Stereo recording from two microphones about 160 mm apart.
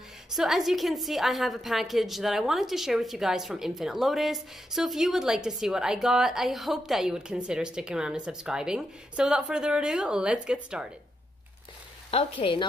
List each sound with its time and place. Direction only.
0.4 s a woman's voice: centre (ahead or behind)
12.1 s speech: 35° left (ahead or behind)